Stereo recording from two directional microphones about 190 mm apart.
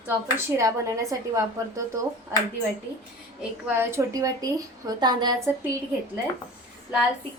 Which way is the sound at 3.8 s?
15° right (ahead or behind).